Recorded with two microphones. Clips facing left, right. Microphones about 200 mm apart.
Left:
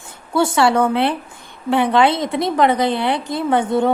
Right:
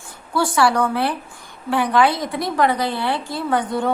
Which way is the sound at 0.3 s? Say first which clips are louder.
Left 3 dB; 25° left (ahead or behind).